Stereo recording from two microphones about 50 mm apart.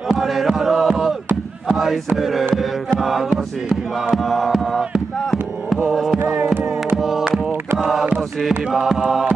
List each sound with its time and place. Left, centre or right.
0.1 s a sound: centre
2.1 s music: centre
3.0 s a sound: centre
4.1 s music: centre
5.2 s a sound: centre
5.9 s music: centre
6.4 s music: right
7.0 s music: centre
8.5 s chant: centre